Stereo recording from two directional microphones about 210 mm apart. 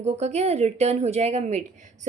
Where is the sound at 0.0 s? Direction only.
30° right (ahead or behind).